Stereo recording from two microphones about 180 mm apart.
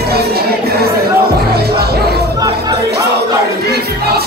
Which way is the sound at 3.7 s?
60° right (ahead or behind).